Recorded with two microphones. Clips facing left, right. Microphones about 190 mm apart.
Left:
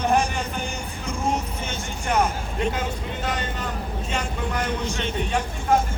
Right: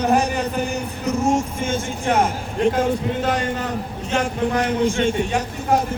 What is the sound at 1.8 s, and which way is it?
Speech, 90° right.